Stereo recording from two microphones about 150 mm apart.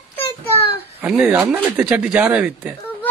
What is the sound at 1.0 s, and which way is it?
Speech, 10° right (ahead or behind).